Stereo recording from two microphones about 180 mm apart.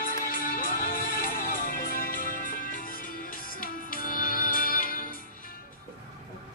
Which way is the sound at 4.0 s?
50° left (ahead or behind).